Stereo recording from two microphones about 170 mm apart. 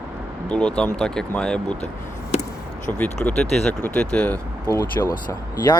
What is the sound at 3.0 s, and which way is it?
Speech, 5° left (ahead or behind).